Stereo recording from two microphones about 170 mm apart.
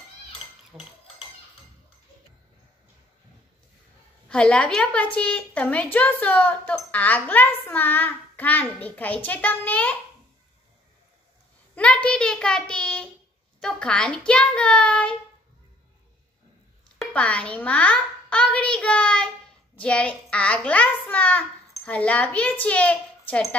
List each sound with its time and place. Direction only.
0.7 s speech: 10° right (ahead or behind)
4.3 s a woman's voice: 5° left (ahead or behind)
11.7 s a child's voice: 5° left (ahead or behind)
17.0 s a child's voice: 5° left (ahead or behind)